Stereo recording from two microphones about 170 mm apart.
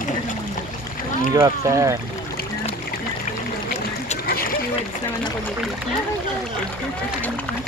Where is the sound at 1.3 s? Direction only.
20° right (ahead or behind).